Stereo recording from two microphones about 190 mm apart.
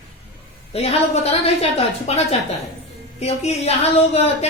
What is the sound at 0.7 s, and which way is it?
A woman's voice, 30° left (ahead or behind).